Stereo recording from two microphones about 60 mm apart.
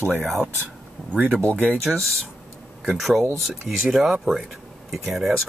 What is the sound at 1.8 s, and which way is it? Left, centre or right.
Speech, centre.